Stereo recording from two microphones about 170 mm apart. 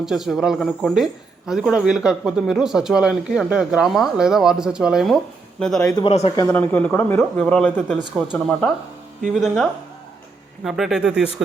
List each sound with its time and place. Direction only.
0.0 s speech: centre (ahead or behind)
6.0 s speech: 35° left (ahead or behind)
6.3 s speech: 15° left (ahead or behind); by 11.3 s 5° right (ahead or behind)